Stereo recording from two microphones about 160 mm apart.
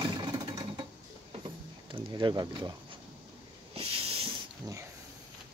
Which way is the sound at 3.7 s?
35° right (ahead or behind).